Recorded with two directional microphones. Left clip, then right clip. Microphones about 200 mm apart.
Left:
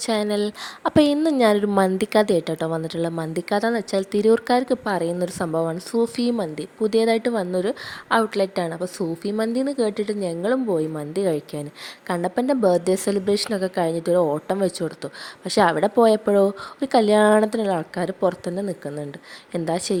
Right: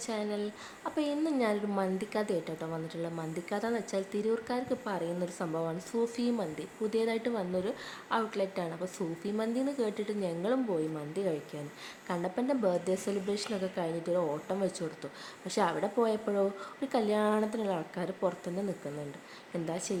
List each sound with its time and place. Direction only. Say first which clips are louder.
0.0 s a woman's voice: left 13 dB; 50° left (ahead or behind)
19.6 s a woman's voice: left 13 dB; 40° left (ahead or behind)